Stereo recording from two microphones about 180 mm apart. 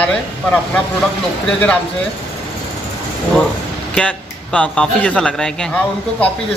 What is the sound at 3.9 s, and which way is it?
A man's voice, 5° left (ahead or behind).